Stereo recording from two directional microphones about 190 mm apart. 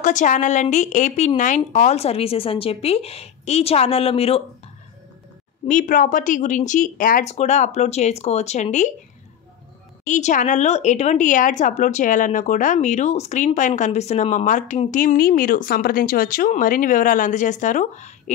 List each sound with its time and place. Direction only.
0.0 s a woman's voice: 40° left (ahead or behind)
5.7 s a woman's voice: 40° left (ahead or behind)
10.0 s a woman's voice: 40° left (ahead or behind)